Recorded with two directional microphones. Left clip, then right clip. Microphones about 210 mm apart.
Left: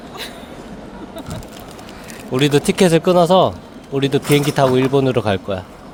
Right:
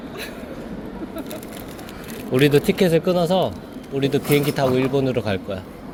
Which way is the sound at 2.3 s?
20° left (ahead or behind).